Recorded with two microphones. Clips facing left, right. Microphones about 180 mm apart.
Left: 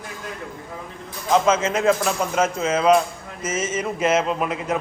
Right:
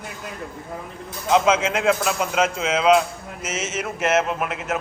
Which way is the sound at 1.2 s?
10° right (ahead or behind).